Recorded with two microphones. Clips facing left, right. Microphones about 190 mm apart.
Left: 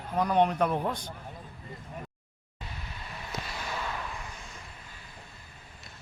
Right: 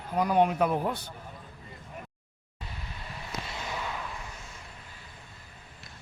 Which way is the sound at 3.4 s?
25° right (ahead or behind).